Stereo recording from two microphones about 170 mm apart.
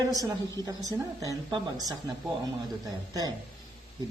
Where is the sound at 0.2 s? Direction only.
20° right (ahead or behind).